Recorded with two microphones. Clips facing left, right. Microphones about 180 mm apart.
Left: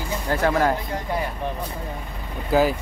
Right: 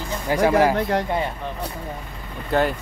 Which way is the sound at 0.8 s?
70° right (ahead or behind).